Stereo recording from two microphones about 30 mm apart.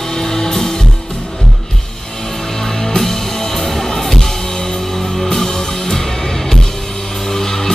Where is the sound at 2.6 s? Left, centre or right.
Centre.